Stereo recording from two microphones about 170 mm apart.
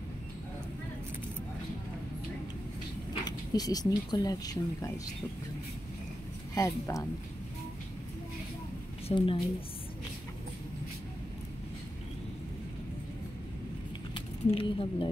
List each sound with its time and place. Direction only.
3.3 s speech: 25° left (ahead or behind)
6.5 s speech: 20° left (ahead or behind)
9.1 s a woman's voice: 30° left (ahead or behind)
14.1 s speech: 30° left (ahead or behind)